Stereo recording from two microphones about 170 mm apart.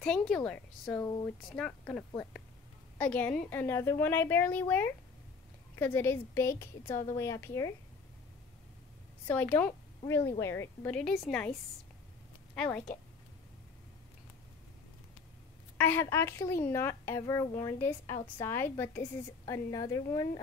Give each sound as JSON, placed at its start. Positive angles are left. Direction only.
{"t": 0.0, "sound": "a woman's voice", "side_deg": 5}
{"t": 1.0, "sound": "speech", "side_deg": 20}
{"t": 1.5, "sound": "a woman's voice", "side_deg": 5}
{"t": 9.3, "sound": "a woman's voice", "side_deg": 10}
{"t": 12.5, "sound": "a woman's voice", "side_deg": 10}
{"t": 15.8, "sound": "a woman's voice", "side_deg": 15}